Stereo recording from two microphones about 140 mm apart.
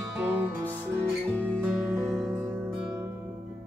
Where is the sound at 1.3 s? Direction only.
10° left (ahead or behind).